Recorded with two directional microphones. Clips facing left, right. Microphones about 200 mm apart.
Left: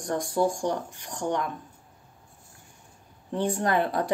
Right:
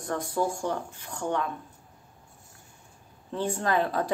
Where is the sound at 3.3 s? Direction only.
15° left (ahead or behind).